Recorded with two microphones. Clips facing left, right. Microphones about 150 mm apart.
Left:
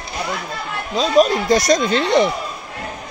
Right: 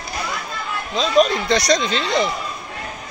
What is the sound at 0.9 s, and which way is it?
Speech, 10° left (ahead or behind).